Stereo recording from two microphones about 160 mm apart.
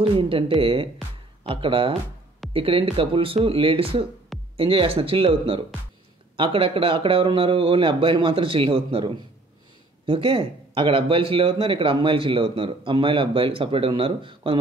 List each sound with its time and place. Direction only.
0.2 s speech: 35° right (ahead or behind)